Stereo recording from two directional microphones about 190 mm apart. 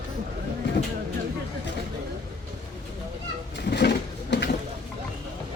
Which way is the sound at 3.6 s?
60° left (ahead or behind).